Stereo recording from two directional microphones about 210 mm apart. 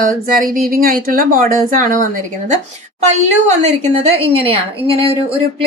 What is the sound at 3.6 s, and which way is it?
A woman's voice, 30° right (ahead or behind).